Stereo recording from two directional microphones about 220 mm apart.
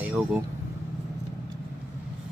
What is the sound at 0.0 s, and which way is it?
Speech, 5° right (ahead or behind).